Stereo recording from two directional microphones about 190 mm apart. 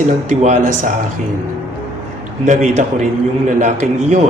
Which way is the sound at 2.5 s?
40° right (ahead or behind).